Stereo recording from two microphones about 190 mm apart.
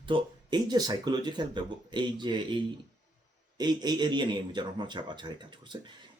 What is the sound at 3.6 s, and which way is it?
Speech, 20° right (ahead or behind).